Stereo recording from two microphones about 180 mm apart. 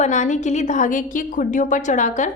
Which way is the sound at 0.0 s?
40° left (ahead or behind).